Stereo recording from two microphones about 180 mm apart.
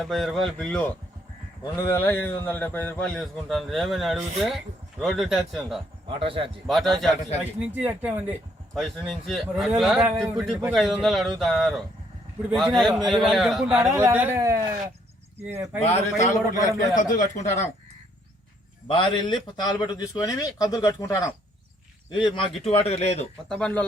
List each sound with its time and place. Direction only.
0.0 s speech: centre (ahead or behind)
6.1 s speech: 30° right (ahead or behind)
6.7 s speech: centre (ahead or behind)
15.8 s a man's voice: 35° left (ahead or behind)
18.9 s a man's voice: 30° left (ahead or behind)
23.5 s speech: 5° left (ahead or behind)